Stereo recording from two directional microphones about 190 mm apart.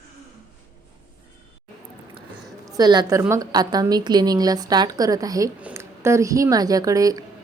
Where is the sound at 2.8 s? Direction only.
20° right (ahead or behind).